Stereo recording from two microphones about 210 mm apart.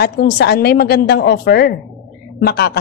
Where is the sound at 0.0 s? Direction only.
50° left (ahead or behind).